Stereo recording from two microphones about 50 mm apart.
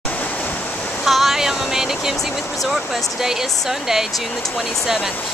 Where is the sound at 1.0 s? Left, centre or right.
Centre.